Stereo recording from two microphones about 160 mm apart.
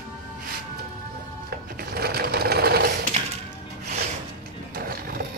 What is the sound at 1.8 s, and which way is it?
Sewing machine, 75° right (ahead or behind).